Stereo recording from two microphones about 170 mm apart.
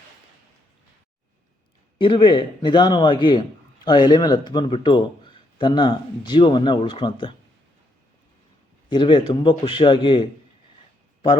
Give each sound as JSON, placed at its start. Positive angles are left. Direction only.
{"t": 2.0, "sound": "a man's voice", "side_deg": 30}
{"t": 8.9, "sound": "a man's voice", "side_deg": 30}